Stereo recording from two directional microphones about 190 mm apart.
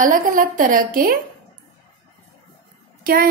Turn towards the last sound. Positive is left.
turn(degrees=-50)  # may be behind; listen again after turning